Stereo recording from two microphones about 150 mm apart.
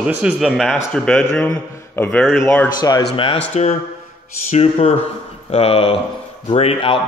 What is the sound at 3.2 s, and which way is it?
Speech, 35° left (ahead or behind).